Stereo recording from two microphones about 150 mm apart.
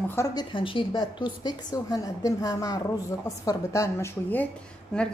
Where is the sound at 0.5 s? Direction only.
35° left (ahead or behind); by 4.4 s 15° left (ahead or behind).